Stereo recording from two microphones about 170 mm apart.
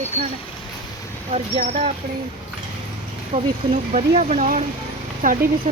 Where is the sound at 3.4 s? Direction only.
40° right (ahead or behind).